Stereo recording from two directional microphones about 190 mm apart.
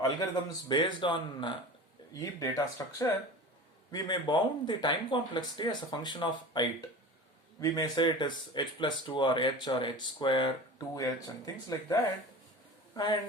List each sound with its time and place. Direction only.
0.7 s speech: 25° left (ahead or behind)